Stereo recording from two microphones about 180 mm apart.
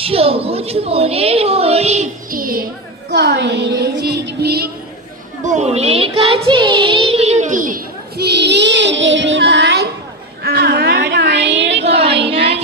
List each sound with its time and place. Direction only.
0.0 s a woman's voice: 30° right (ahead or behind)
2.3 s a woman's voice: 50° right (ahead or behind)
3.1 s a woman's voice: 70° right (ahead or behind)
5.5 s a woman's voice: 40° right (ahead or behind)
7.1 s a sound: 35° right (ahead or behind); by 11.9 s 75° right (ahead or behind)
11.9 s a sound: 35° right (ahead or behind)
12.2 s music: 30° right (ahead or behind)